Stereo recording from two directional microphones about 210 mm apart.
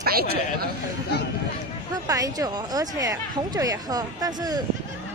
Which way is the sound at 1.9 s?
15° right (ahead or behind).